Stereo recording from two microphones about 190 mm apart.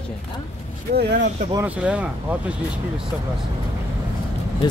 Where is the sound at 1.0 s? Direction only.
65° right (ahead or behind).